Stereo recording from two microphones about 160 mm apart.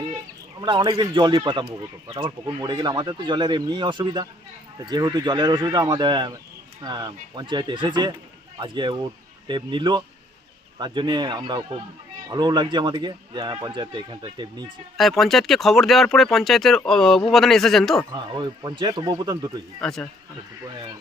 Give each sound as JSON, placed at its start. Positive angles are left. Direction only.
{"t": 0.6, "sound": "speech", "side_deg": -30}
{"t": 14.9, "sound": "speech", "side_deg": 0}
{"t": 18.1, "sound": "speech", "side_deg": -30}
{"t": 19.8, "sound": "speech", "side_deg": 5}